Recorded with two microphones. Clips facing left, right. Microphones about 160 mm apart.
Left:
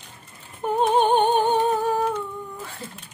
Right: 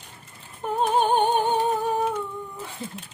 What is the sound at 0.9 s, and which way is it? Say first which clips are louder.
Humming: left 2 dB; 5° right (ahead or behind).